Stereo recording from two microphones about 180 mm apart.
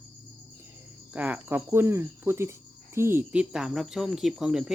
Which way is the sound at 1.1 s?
10° right (ahead or behind).